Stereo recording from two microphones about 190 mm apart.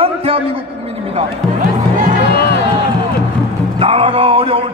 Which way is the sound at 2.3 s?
55° left (ahead or behind).